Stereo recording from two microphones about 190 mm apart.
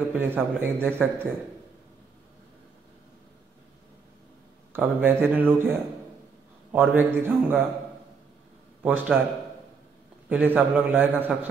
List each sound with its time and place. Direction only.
0.1 s speech: 10° right (ahead or behind)
4.7 s speech: 10° right (ahead or behind)
8.8 s a man's voice: 5° right (ahead or behind)
10.3 s speech: 10° right (ahead or behind)